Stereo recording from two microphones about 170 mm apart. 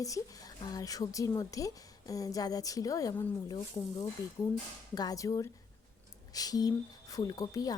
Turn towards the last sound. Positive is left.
turn(degrees=20)  # may be behind; listen again after turning